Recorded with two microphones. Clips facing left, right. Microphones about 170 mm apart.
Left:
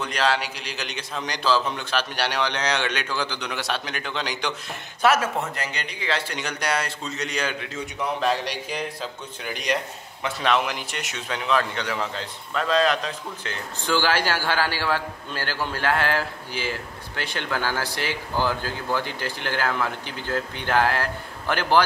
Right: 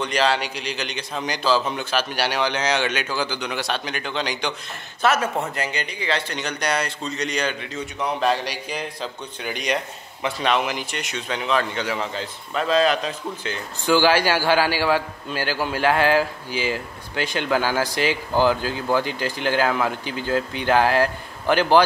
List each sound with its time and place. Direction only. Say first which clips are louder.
0.0 s speech: right 3 dB; centre (ahead or behind)
13.9 s a man's voice: right 5 dB; 15° right (ahead or behind)